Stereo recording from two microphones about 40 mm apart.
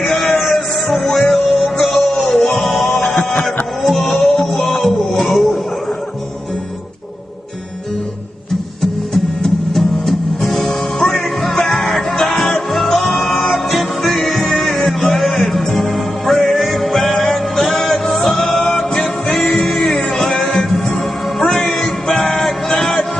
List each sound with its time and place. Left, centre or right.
0.0 s music: centre
3.1 s a sound: centre
3.8 s music: centre
9.1 s music: centre
12.7 s music: centre
22.7 s a sound: centre